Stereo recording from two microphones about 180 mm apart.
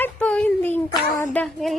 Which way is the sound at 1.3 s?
5° left (ahead or behind).